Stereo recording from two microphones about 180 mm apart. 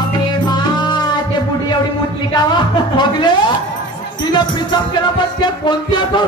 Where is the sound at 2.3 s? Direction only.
25° left (ahead or behind).